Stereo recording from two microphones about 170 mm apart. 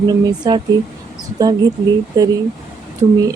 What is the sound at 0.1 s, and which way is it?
Speech, 25° right (ahead or behind).